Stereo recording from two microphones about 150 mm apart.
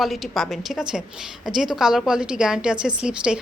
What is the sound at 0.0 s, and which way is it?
A woman's voice, centre (ahead or behind).